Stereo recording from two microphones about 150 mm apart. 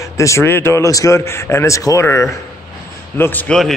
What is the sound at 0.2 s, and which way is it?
A man's voice, 20° left (ahead or behind).